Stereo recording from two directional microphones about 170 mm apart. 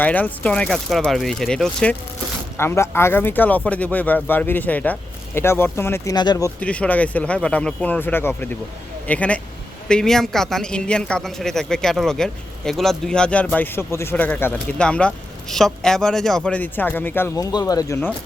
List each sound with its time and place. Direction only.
0.0 s a man's voice: 10° left (ahead or behind)
2.6 s speech: 15° left (ahead or behind)
6.6 s a man's voice: 10° left (ahead or behind)